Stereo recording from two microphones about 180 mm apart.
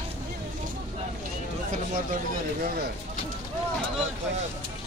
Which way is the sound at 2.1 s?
55° right (ahead or behind).